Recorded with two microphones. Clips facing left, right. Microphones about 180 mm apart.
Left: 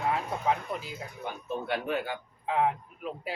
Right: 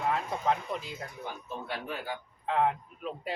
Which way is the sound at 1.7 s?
65° left (ahead or behind).